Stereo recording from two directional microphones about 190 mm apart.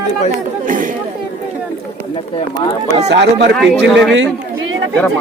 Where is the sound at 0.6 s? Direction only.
45° right (ahead or behind).